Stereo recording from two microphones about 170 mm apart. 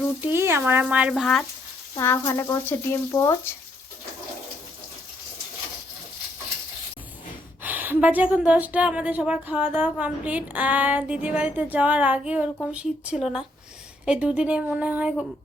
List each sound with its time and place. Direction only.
0.2 s speech: 15° right (ahead or behind); by 1.5 s centre (ahead or behind)
2.0 s speech: 15° left (ahead or behind)
7.6 s speech: 10° right (ahead or behind)